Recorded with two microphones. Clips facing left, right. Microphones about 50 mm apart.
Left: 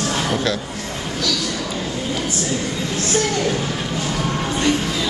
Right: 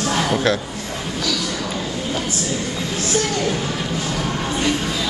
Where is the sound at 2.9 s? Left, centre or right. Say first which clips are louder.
Left 1 dB; right.